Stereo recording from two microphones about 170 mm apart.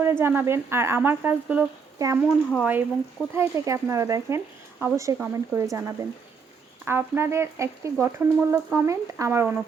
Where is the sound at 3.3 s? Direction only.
15° right (ahead or behind).